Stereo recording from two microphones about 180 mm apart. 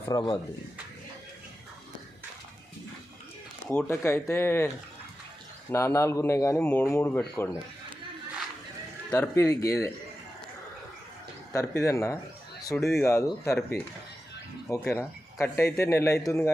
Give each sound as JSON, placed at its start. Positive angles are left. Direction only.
{"t": 0.1, "sound": "speech", "side_deg": 20}
{"t": 3.7, "sound": "speech", "side_deg": 10}
{"t": 5.7, "sound": "speech", "side_deg": 15}
{"t": 9.0, "sound": "speech", "side_deg": 10}
{"t": 11.5, "sound": "speech", "side_deg": 15}
{"t": 12.7, "sound": "speech", "side_deg": 0}
{"t": 13.0, "sound": "speech", "side_deg": 15}